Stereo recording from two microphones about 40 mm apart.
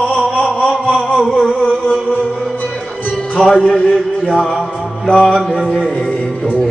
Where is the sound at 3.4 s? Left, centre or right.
Centre.